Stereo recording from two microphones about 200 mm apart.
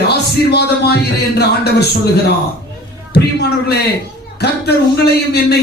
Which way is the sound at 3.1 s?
55° left (ahead or behind).